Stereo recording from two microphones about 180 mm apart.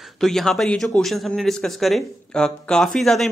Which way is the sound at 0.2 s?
Centre (ahead or behind).